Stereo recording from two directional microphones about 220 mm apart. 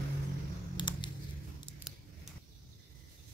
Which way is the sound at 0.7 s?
20° left (ahead or behind).